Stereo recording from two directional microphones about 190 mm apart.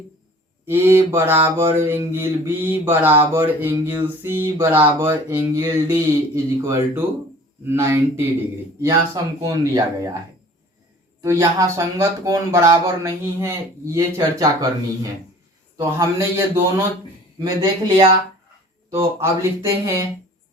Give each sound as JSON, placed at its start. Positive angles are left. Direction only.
{"t": 0.6, "sound": "mantra", "side_deg": -10}
{"t": 8.8, "sound": "speech", "side_deg": -20}
{"t": 11.2, "sound": "mantra", "side_deg": -15}
{"t": 15.8, "sound": "mantra", "side_deg": -15}
{"t": 17.4, "sound": "speech", "side_deg": -25}
{"t": 18.9, "sound": "mantra", "side_deg": -15}